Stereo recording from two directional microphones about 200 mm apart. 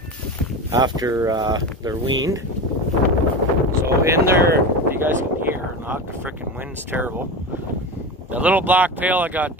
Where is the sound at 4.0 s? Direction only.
15° right (ahead or behind).